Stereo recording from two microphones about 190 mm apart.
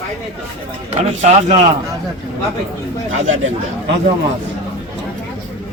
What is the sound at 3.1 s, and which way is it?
Speech, 90° right.